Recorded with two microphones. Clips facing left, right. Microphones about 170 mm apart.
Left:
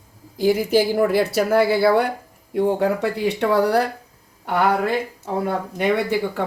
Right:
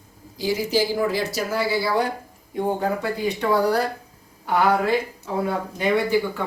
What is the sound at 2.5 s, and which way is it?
Speech, 75° left (ahead or behind).